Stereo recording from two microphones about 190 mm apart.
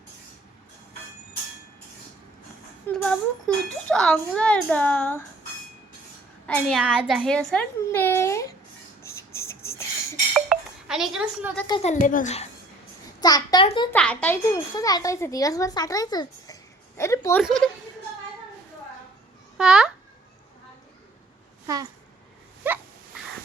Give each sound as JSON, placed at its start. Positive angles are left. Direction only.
{"t": 2.8, "sound": "a child's voice", "side_deg": 5}
{"t": 6.5, "sound": "a child's voice", "side_deg": 0}
{"t": 9.0, "sound": "a sound", "side_deg": 15}
{"t": 10.3, "sound": "chink", "side_deg": 0}
{"t": 11.7, "sound": "speech", "side_deg": 35}
{"t": 13.1, "sound": "a child's voice", "side_deg": 20}
{"t": 13.9, "sound": "speech", "side_deg": 5}
{"t": 14.5, "sound": "speech", "side_deg": 20}
{"t": 19.5, "sound": "a child's voice", "side_deg": -5}
{"t": 22.6, "sound": "sneeze", "side_deg": -10}